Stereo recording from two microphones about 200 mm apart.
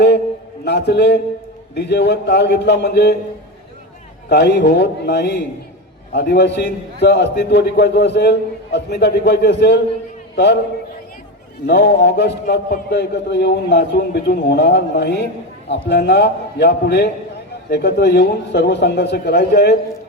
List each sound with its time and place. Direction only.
0.6 s a man's voice: 55° left (ahead or behind)
4.3 s a man's voice: 60° left (ahead or behind)
11.6 s a man's voice: 55° left (ahead or behind)